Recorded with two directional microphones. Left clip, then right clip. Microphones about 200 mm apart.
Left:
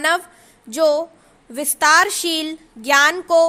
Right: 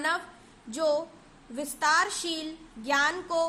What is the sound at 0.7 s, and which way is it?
A woman's voice, 45° left (ahead or behind).